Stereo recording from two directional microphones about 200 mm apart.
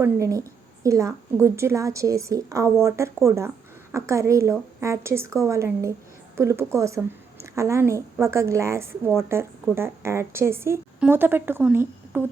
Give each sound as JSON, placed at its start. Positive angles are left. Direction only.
{"t": 0.0, "sound": "a woman's voice", "side_deg": -15}